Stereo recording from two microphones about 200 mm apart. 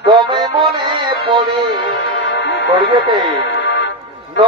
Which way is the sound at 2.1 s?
60° left (ahead or behind).